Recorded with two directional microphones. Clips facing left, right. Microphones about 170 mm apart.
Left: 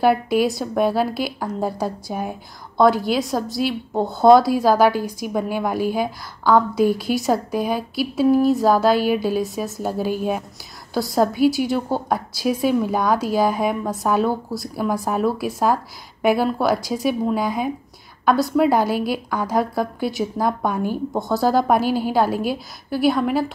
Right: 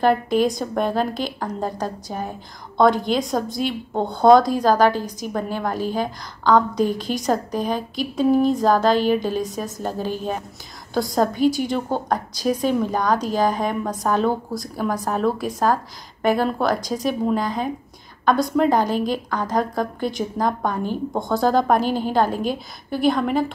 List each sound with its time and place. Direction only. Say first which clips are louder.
0.0 s a woman's voice: left 1 dB; 10° left (ahead or behind)